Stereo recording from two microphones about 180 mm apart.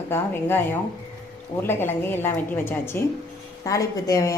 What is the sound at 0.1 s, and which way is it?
A woman's voice, 10° left (ahead or behind).